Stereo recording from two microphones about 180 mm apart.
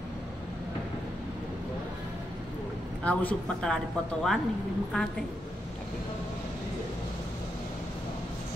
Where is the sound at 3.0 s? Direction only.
5° left (ahead or behind).